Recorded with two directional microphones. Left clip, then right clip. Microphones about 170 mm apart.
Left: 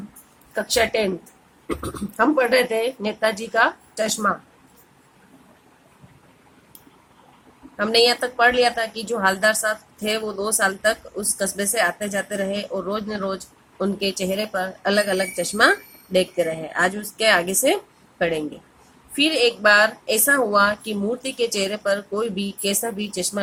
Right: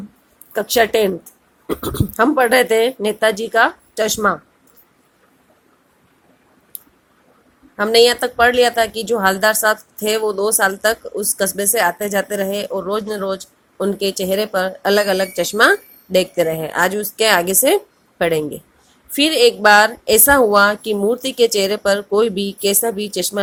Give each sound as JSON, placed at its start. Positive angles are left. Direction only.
{"t": 0.5, "sound": "speech", "side_deg": -35}
{"t": 7.8, "sound": "speech", "side_deg": -35}